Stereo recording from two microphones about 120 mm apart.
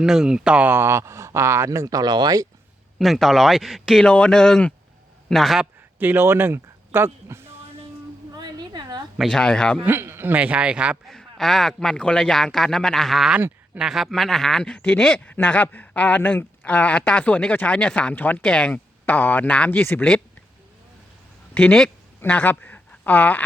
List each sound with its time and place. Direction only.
0.0 s speech: 5° right (ahead or behind); by 2.5 s 35° right (ahead or behind)
3.0 s speech: centre (ahead or behind)
6.0 s speech: 15° right (ahead or behind)
8.3 s a sound: 35° right (ahead or behind)
9.1 s speech: 5° left (ahead or behind)
9.8 s a man's voice: 15° right (ahead or behind)
11.1 s speech: 5° left (ahead or behind)
21.5 s speech: 5° left (ahead or behind)